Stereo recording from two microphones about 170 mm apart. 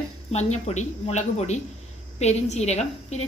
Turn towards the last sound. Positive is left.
turn(degrees=40)  # may be behind; listen again after turning